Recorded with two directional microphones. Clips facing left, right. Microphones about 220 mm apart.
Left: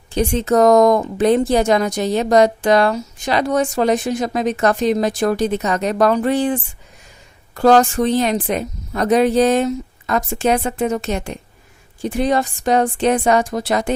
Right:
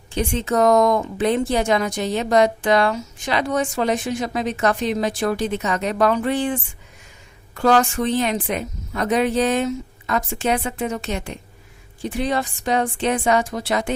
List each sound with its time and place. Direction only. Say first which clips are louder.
0.1 s a woman's voice: left 5 dB; 40° left (ahead or behind)